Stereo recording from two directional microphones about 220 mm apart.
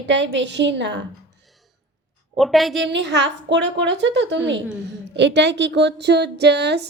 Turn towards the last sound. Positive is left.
turn(degrees=-50)  # may be behind; listen again after turning